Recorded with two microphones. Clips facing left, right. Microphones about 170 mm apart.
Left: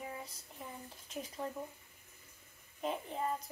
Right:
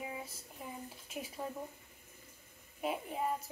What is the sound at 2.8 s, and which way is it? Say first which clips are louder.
Speech: right 1 dB; 10° right (ahead or behind).